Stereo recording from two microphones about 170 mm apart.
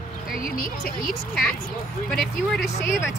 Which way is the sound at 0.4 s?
55° left (ahead or behind).